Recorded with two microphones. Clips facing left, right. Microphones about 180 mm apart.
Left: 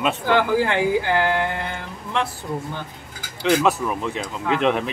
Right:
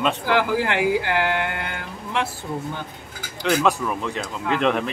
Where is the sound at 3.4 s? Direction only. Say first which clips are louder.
Left 2 dB; 5° left (ahead or behind).